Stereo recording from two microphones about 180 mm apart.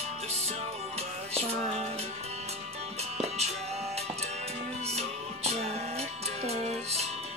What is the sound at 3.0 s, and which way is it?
Music, 35° right (ahead or behind).